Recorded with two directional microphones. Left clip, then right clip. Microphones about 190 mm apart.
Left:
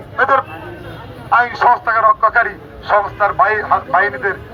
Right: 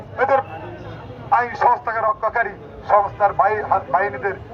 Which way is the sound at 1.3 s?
10° right (ahead or behind).